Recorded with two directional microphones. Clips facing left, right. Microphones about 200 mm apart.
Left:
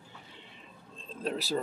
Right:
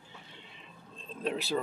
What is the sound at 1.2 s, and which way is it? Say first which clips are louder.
Speech: even; 40° left (ahead or behind).